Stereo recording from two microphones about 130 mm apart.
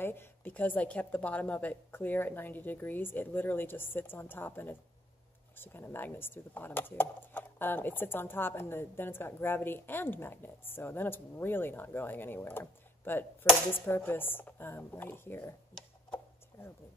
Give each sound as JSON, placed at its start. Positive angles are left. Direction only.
{"t": 0.0, "sound": "speech", "side_deg": 15}